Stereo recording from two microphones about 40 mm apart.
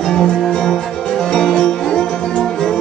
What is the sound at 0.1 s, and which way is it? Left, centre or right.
Music, centre.